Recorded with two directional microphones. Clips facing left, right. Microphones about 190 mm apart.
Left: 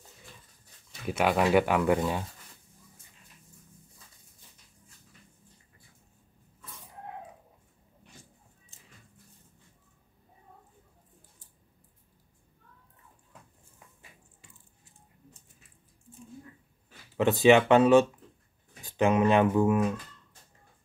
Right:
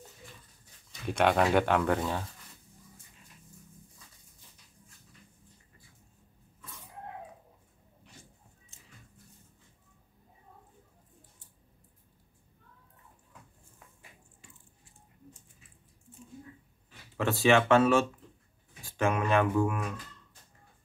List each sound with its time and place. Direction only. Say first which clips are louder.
1.1 s speech: left 1 dB; 5° left (ahead or behind)
17.2 s speech: left 4 dB; 20° left (ahead or behind)